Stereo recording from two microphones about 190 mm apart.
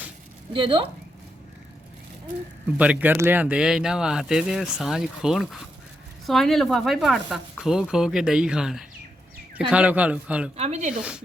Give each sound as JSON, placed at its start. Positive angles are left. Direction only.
{"t": 0.5, "sound": "speech", "side_deg": -25}
{"t": 2.7, "sound": "a man's voice", "side_deg": -5}
{"t": 10.6, "sound": "speech", "side_deg": -40}
{"t": 10.9, "sound": "speech", "side_deg": -5}